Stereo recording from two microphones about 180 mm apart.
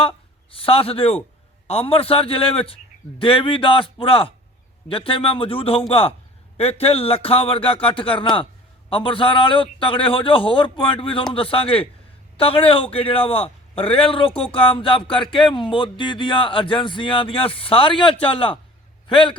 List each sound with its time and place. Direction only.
0.0 s a man's voice: 30° left (ahead or behind)